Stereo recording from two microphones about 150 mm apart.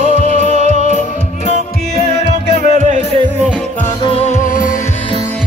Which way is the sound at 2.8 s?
55° right (ahead or behind).